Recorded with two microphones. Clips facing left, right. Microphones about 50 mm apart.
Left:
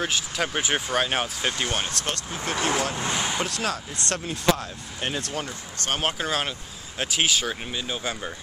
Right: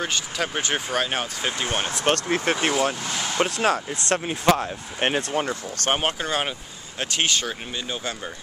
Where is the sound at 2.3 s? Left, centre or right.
Right.